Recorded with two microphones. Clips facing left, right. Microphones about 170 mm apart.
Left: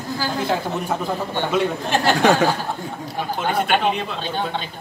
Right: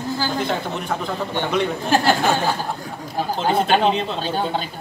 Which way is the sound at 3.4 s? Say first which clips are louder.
Right 2 dB; 30° right (ahead or behind).